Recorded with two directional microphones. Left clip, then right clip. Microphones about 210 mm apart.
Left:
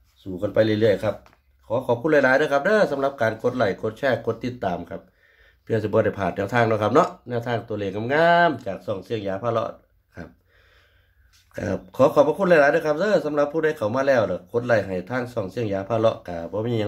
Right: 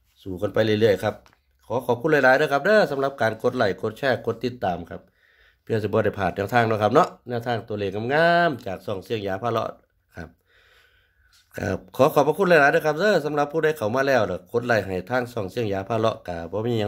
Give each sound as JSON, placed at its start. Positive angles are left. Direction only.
{"t": 0.2, "sound": "speech", "side_deg": -50}
{"t": 11.5, "sound": "speech", "side_deg": -40}